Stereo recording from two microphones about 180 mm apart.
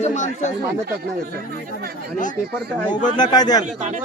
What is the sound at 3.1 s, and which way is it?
Speech, 25° left (ahead or behind).